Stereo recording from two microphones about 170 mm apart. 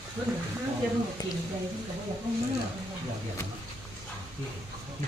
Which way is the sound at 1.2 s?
25° left (ahead or behind).